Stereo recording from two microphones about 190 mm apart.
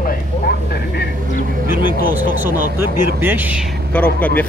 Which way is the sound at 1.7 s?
50° right (ahead or behind).